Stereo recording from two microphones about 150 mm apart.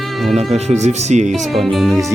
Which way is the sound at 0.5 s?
50° right (ahead or behind).